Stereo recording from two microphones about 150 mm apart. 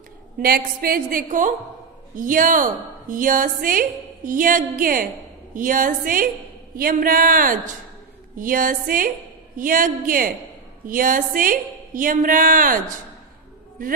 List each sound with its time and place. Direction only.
0.4 s a woman's voice: 85° right; by 12.9 s 65° right (ahead or behind)